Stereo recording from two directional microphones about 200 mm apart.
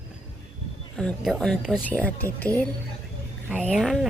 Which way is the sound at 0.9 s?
5° left (ahead or behind).